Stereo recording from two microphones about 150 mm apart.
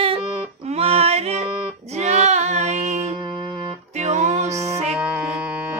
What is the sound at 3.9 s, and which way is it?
Music, 50° right (ahead or behind).